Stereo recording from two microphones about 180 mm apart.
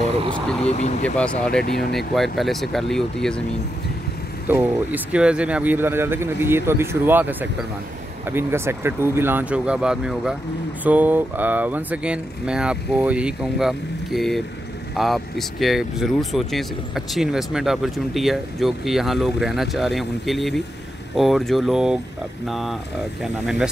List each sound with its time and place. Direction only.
0.7 s speech: 35° left (ahead or behind)
1.0 s speech: 5° left (ahead or behind)
1.6 s speech: 60° left (ahead or behind)
2.0 s speech: centre (ahead or behind)
4.5 s speech: 10° right (ahead or behind)